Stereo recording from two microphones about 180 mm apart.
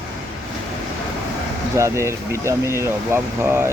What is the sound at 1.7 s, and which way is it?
Speech, 15° right (ahead or behind).